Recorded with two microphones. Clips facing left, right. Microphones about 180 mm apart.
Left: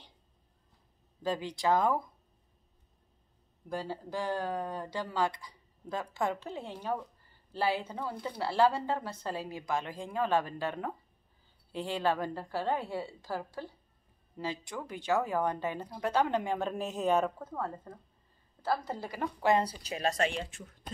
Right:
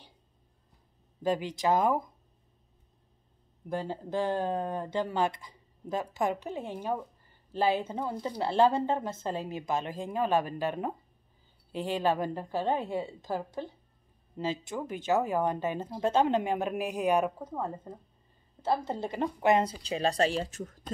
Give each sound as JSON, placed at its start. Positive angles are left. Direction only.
{"t": 1.2, "sound": "speech", "side_deg": -20}
{"t": 3.6, "sound": "speech", "side_deg": -20}